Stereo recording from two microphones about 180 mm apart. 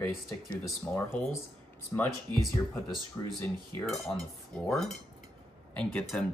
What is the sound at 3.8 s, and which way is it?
Cutlery, centre (ahead or behind).